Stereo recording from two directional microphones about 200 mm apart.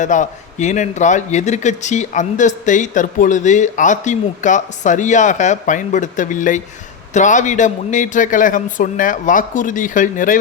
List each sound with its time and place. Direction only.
0.0 s a man's voice: 40° left (ahead or behind)